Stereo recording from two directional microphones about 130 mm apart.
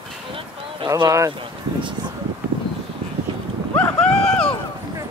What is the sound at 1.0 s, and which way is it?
Speech, 30° right (ahead or behind).